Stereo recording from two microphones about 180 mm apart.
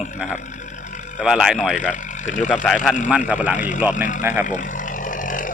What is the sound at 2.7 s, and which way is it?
Speech, centre (ahead or behind).